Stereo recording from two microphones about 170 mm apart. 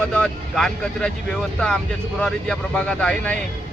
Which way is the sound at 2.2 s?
5° left (ahead or behind).